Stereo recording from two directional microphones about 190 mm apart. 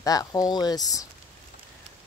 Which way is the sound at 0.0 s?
20° left (ahead or behind).